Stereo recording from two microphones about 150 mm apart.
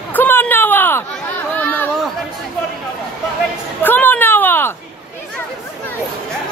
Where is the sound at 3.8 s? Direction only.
10° left (ahead or behind).